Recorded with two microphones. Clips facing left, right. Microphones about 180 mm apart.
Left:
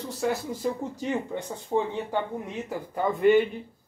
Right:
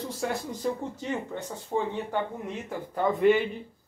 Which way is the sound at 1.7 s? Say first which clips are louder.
Left 3 dB; 5° left (ahead or behind).